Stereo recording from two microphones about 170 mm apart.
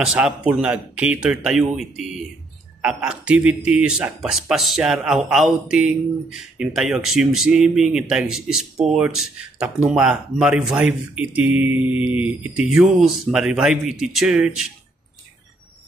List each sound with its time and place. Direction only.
0.0 s a man's voice: 5° right (ahead or behind)